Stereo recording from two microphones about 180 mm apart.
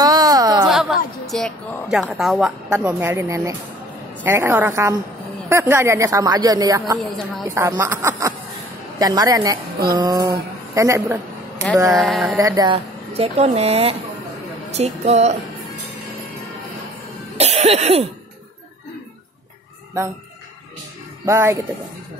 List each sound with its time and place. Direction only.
0.0 s a sound: 20° right (ahead or behind)
0.7 s a woman's voice: centre (ahead or behind)
2.9 s speech: 15° right (ahead or behind)
11.9 s a sound: centre (ahead or behind)
12.4 s speech: 20° right (ahead or behind); by 15.3 s 40° right (ahead or behind)
17.4 s cough: 35° right (ahead or behind)
21.3 s speech: 15° right (ahead or behind)